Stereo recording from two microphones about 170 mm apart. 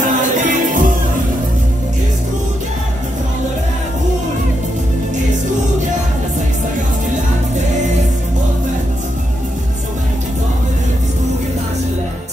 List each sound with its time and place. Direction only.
0.0 s music: 50° right (ahead or behind)